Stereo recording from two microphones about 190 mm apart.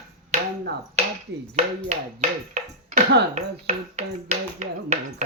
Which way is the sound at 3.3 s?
35° right (ahead or behind).